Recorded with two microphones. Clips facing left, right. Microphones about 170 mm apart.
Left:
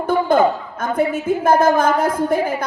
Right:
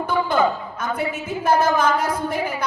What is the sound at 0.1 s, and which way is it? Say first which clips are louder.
A woman's voice: left 5 dB; 50° left (ahead or behind).